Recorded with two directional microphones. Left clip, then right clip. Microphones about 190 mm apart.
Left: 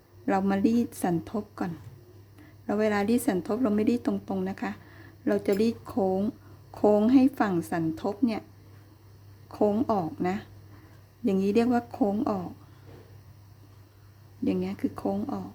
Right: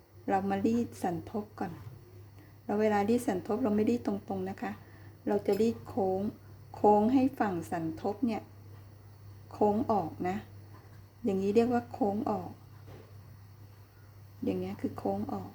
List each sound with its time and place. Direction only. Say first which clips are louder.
0.3 s a woman's voice: left 4 dB; 20° left (ahead or behind)
9.5 s a woman's voice: left 3 dB; 20° left (ahead or behind)
14.4 s a woman's voice: left 5 dB; 20° left (ahead or behind)